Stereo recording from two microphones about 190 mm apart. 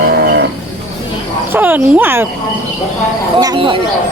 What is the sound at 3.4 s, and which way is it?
Speech, 25° right (ahead or behind).